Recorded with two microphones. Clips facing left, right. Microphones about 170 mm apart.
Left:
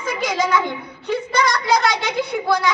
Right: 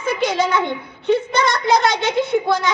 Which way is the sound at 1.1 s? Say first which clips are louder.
Right 3 dB; 25° right (ahead or behind).